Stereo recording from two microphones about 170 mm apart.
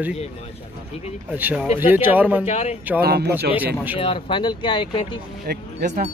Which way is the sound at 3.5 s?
10° right (ahead or behind).